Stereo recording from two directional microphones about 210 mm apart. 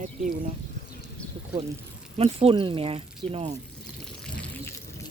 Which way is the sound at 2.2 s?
25° right (ahead or behind).